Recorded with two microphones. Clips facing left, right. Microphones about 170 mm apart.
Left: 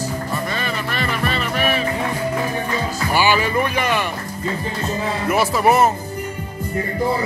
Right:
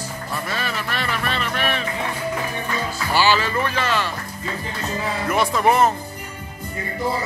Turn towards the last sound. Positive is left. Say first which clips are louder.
# left 2 dB
turn(degrees=5)  # may be behind; listen again after turning